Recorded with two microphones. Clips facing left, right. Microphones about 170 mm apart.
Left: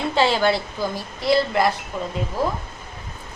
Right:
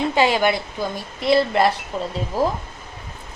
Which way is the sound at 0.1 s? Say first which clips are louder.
Left 2 dB; 15° right (ahead or behind).